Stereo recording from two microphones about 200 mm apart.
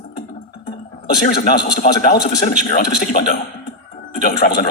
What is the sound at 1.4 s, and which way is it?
Speech, 50° left (ahead or behind).